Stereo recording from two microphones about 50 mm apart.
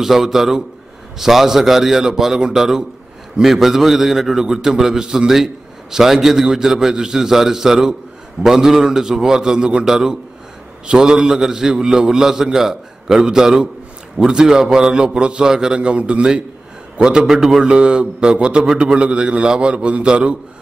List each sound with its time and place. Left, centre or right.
0.0 s a man's voice: centre
17.6 s a man's voice: centre